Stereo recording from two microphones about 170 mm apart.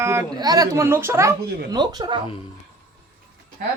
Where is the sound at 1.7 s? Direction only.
25° right (ahead or behind).